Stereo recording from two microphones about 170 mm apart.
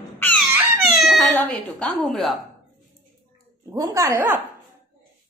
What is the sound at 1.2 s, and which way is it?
Speech, 10° left (ahead or behind).